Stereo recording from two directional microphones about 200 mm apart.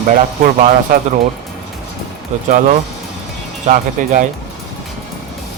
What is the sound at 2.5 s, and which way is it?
Speech, 40° right (ahead or behind).